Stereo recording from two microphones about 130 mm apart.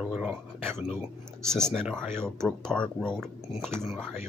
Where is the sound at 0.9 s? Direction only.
5° left (ahead or behind).